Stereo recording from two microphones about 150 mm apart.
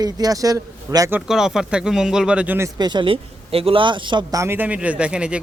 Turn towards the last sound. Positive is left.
turn(degrees=-5)  # may be behind; listen again after turning